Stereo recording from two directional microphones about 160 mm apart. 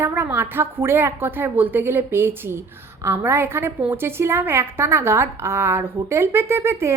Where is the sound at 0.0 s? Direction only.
10° right (ahead or behind).